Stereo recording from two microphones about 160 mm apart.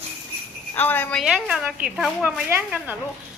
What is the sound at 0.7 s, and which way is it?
Speech, 10° left (ahead or behind).